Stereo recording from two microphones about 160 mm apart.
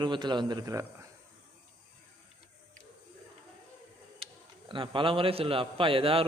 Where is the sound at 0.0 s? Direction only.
30° right (ahead or behind).